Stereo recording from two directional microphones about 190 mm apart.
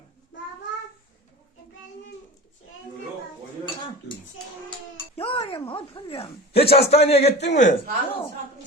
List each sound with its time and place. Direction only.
5.1 s speech: 30° left (ahead or behind)